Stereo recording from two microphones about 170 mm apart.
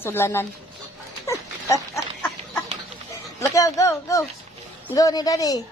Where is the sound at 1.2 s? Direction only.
20° left (ahead or behind).